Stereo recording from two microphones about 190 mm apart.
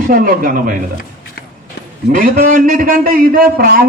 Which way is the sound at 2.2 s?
45° right (ahead or behind).